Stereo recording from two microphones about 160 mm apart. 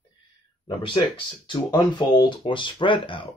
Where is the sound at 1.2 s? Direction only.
30° left (ahead or behind).